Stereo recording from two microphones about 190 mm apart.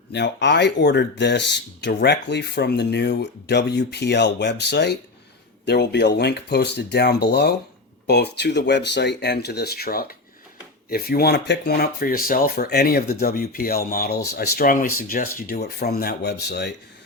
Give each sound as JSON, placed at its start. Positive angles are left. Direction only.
{"t": 0.1, "sound": "speech", "side_deg": 65}